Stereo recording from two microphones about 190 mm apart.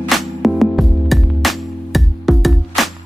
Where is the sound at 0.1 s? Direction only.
Centre (ahead or behind).